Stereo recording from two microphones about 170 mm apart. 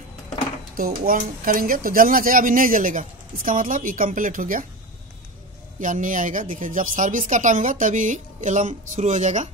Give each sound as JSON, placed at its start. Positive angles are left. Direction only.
{"t": 0.7, "sound": "speech", "side_deg": -60}
{"t": 5.8, "sound": "speech", "side_deg": -50}